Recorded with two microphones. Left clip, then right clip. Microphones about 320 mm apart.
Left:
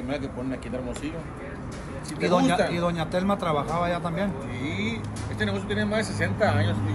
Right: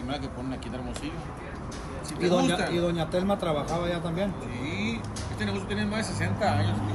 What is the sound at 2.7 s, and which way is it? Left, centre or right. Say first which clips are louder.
Speech: left 1 dB; centre.